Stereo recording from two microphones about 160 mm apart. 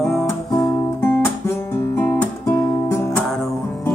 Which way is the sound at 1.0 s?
15° left (ahead or behind).